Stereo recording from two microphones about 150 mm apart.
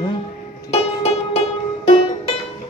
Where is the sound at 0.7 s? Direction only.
40° left (ahead or behind).